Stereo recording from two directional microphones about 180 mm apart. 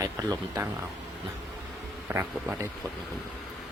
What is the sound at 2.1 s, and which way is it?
Speech, 10° right (ahead or behind).